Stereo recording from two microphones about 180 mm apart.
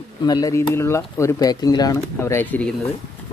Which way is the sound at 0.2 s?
20° left (ahead or behind).